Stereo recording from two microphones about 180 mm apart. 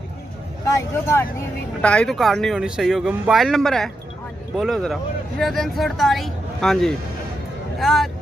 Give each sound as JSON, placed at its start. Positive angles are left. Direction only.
{"t": 0.7, "sound": "speech", "side_deg": 15}
{"t": 1.8, "sound": "speech", "side_deg": 5}